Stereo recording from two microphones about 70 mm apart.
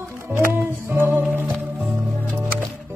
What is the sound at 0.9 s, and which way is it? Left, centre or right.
Music, right.